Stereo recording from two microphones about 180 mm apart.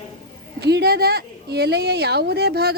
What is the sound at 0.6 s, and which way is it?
A woman's voice, 65° right (ahead or behind).